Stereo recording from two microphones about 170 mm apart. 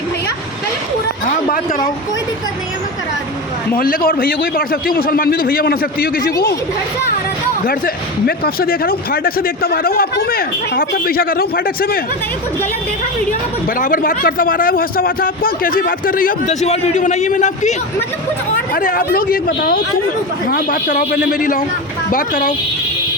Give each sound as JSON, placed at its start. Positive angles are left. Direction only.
{"t": 3.8, "sound": "speech", "side_deg": 60}
{"t": 8.3, "sound": "speech", "side_deg": 60}
{"t": 13.7, "sound": "a man's voice", "side_deg": 50}
{"t": 21.1, "sound": "a man's voice", "side_deg": 75}
{"t": 21.3, "sound": "a man's voice", "side_deg": 50}